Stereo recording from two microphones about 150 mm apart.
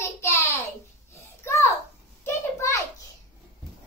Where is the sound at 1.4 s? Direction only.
20° left (ahead or behind).